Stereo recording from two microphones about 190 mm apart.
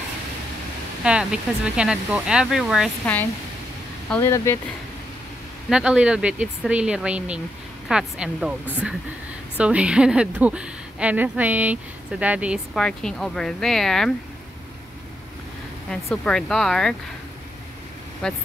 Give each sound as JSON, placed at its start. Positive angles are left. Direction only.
{"t": 1.0, "sound": "a woman's voice", "side_deg": -5}
{"t": 4.2, "sound": "speech", "side_deg": 15}
{"t": 5.7, "sound": "a woman's voice", "side_deg": -5}
{"t": 9.6, "sound": "a woman's voice", "side_deg": -5}
{"t": 15.9, "sound": "a woman's voice", "side_deg": 5}
{"t": 18.2, "sound": "a woman's voice", "side_deg": 5}